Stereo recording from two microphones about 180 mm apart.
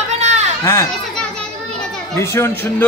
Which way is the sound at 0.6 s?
15° left (ahead or behind).